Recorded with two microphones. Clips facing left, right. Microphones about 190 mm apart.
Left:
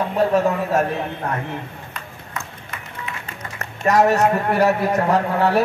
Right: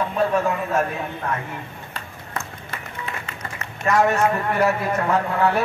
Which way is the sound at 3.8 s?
40° left (ahead or behind).